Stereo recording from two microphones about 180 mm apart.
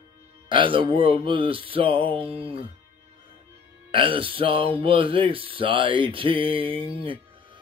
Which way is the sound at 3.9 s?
30° right (ahead or behind).